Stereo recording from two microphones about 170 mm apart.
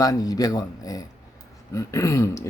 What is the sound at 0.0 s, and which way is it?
Speech, 20° left (ahead or behind).